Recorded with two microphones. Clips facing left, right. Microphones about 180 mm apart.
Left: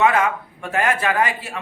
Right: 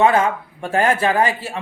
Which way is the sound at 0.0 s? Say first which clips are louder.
Right 2 dB; 30° right (ahead or behind).